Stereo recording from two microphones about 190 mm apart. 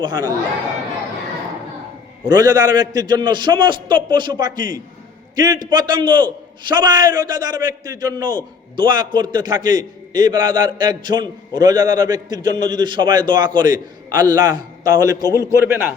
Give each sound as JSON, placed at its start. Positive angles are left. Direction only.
{"t": 0.0, "sound": "a man's voice", "side_deg": -20}
{"t": 2.2, "sound": "a man's voice", "side_deg": -20}